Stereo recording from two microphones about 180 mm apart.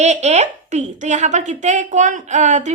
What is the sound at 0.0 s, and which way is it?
Speech, 40° right (ahead or behind).